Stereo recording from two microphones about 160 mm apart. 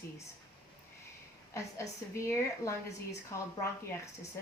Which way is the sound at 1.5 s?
20° left (ahead or behind).